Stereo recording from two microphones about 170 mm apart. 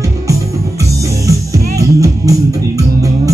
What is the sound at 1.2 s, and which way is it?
Music, 20° right (ahead or behind).